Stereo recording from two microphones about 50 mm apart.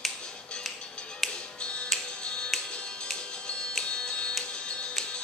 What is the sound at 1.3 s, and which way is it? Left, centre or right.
Music, left.